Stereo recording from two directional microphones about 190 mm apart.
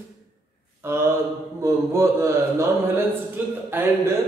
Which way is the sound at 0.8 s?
15° right (ahead or behind).